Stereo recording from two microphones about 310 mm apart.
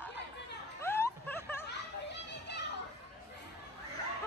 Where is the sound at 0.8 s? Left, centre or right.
Centre.